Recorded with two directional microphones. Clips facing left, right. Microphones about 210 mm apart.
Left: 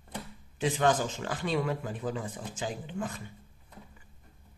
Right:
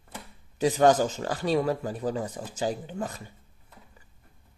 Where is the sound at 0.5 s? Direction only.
40° right (ahead or behind).